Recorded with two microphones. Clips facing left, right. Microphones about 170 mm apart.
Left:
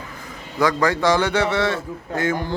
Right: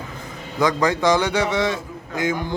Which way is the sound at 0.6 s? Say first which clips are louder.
Even; 20° right (ahead or behind).